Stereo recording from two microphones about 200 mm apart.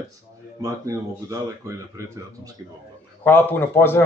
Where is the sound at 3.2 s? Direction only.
10° left (ahead or behind).